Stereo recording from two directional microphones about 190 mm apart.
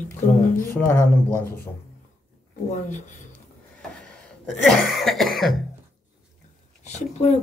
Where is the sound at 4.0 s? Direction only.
Centre (ahead or behind).